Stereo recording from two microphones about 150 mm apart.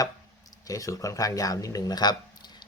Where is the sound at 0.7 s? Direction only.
20° left (ahead or behind).